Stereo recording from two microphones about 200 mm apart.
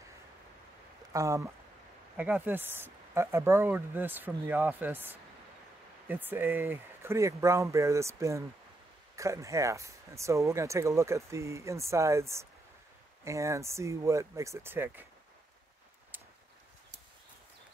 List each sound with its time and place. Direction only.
1.1 s speech: 15° right (ahead or behind)